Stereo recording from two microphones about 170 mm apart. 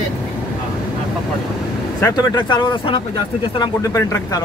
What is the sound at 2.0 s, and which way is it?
Speech, 25° left (ahead or behind).